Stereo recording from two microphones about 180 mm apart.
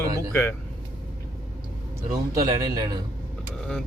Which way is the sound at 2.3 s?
20° right (ahead or behind).